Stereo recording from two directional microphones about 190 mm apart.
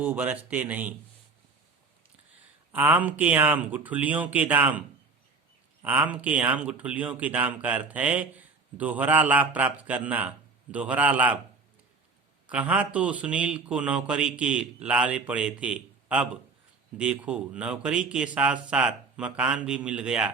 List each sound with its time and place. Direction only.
0.0 s speech: 10° right (ahead or behind)
2.7 s speech: 10° right (ahead or behind)
5.8 s speech: 5° right (ahead or behind)
12.5 s speech: 5° right (ahead or behind)